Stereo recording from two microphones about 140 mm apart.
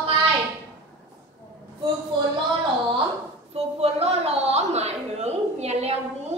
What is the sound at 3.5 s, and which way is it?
A woman's voice, 45° right (ahead or behind).